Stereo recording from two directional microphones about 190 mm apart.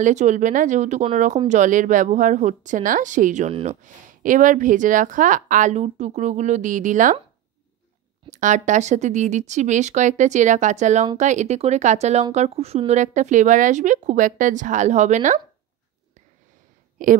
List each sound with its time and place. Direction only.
0.0 s a woman's voice: 40° right (ahead or behind)
8.3 s a woman's voice: 40° right (ahead or behind)
17.0 s a woman's voice: 45° right (ahead or behind)